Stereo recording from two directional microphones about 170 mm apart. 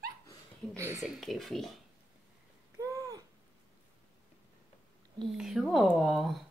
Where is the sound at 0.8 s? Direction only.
15° right (ahead or behind).